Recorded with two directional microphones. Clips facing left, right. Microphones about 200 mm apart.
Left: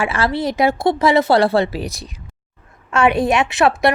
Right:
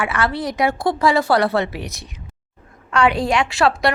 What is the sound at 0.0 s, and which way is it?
A woman's voice, 25° left (ahead or behind).